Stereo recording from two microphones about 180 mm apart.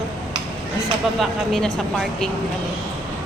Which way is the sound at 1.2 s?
Centre (ahead or behind).